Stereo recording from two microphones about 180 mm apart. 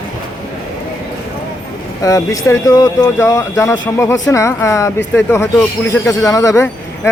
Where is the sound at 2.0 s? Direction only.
20° left (ahead or behind).